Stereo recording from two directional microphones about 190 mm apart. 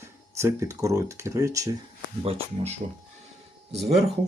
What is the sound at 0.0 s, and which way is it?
Speech, 15° right (ahead or behind).